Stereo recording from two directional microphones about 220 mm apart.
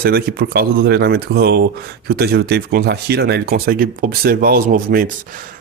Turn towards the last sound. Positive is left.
turn(degrees=-40)  # may be behind; listen again after turning